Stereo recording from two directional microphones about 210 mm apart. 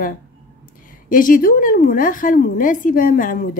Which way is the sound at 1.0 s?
40° left (ahead or behind).